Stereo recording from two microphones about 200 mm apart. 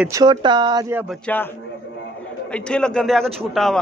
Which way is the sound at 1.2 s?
10° left (ahead or behind).